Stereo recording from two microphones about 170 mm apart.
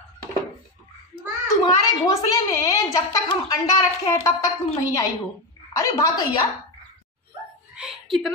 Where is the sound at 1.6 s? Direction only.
20° left (ahead or behind).